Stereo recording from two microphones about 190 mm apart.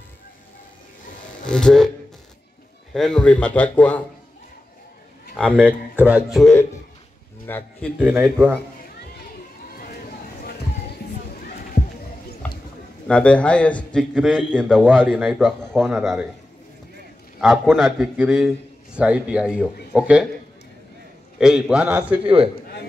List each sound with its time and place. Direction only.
1.4 s speech: 5° left (ahead or behind)
2.9 s a man's voice: 5° left (ahead or behind)
5.6 s a man's voice: 10° right (ahead or behind); by 7.9 s 10° left (ahead or behind)
8.0 s speech: 10° right (ahead or behind)
13.1 s a man's voice: 5° left (ahead or behind)
14.9 s a man's voice: 10° right (ahead or behind)
17.6 s a man's voice: centre (ahead or behind)
21.4 s a man's voice: 5° right (ahead or behind)
22.2 s a man's voice: 30° right (ahead or behind)